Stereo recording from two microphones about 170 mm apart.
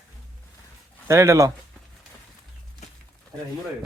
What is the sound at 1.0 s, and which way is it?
Speech, 15° right (ahead or behind).